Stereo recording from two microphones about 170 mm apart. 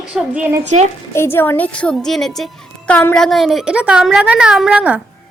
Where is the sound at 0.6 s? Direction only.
45° right (ahead or behind).